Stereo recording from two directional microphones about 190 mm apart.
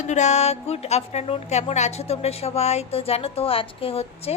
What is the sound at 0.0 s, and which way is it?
Speech, 40° left (ahead or behind).